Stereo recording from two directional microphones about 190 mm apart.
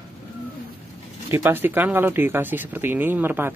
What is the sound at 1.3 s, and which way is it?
Speech, 10° right (ahead or behind).